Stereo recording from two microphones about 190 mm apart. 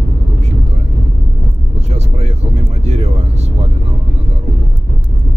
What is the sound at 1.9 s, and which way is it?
Vehicle, 35° right (ahead or behind).